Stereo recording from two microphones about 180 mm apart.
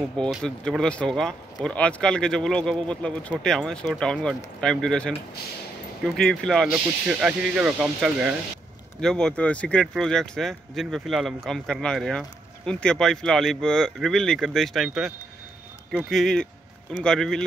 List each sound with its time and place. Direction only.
0.2 s speech: centre (ahead or behind)
6.1 s speech: 5° left (ahead or behind)
9.0 s speech: 5° left (ahead or behind)